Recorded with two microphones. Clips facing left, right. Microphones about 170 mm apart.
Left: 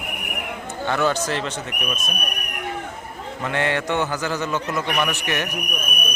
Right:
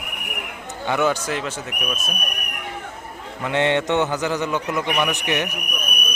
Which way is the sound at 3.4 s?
20° right (ahead or behind).